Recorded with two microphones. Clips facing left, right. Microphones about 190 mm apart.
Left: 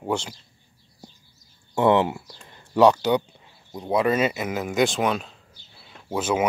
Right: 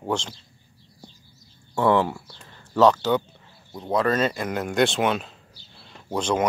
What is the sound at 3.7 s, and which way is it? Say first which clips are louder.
Speech: left 1 dB; 10° left (ahead or behind).